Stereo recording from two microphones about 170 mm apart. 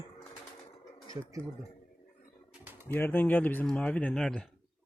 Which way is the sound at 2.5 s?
10° right (ahead or behind).